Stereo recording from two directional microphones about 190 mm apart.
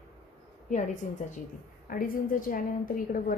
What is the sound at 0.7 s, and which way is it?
A woman's voice, 40° left (ahead or behind).